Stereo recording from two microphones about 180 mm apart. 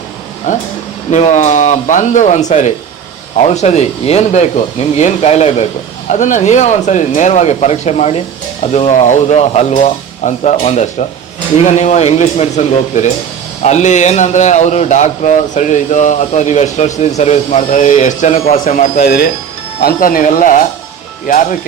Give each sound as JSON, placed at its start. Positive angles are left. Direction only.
{"t": 0.5, "sound": "speech", "side_deg": 40}